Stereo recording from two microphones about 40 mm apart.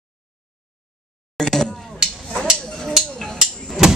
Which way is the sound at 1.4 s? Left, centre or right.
Centre.